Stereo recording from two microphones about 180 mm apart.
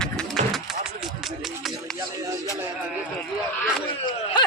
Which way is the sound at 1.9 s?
15° right (ahead or behind).